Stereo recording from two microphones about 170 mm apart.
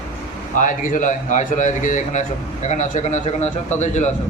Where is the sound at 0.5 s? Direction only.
50° left (ahead or behind).